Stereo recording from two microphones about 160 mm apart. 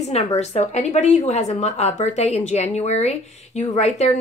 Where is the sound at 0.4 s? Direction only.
40° left (ahead or behind).